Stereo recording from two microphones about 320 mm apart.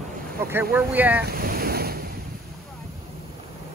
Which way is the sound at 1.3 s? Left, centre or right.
Right.